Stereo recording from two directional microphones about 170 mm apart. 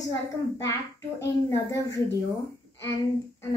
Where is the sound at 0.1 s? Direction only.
20° left (ahead or behind).